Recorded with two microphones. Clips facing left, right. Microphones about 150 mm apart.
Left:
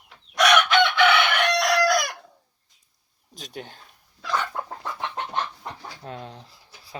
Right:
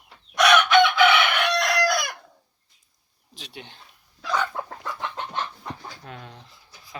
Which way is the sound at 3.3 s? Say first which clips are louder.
Left 4 dB; 45° left (ahead or behind).